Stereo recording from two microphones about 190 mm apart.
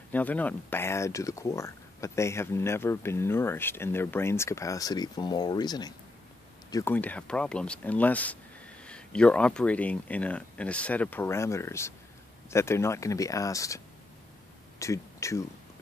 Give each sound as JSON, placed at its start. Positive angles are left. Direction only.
{"t": 0.1, "sound": "speech", "side_deg": 10}
{"t": 6.7, "sound": "speech", "side_deg": 10}